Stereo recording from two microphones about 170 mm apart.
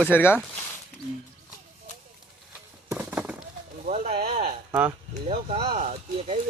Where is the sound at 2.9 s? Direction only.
10° right (ahead or behind).